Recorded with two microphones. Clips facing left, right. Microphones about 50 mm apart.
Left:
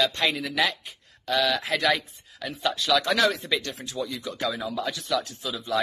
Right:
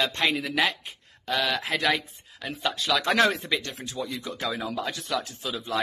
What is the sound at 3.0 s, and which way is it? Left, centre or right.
Speech, right.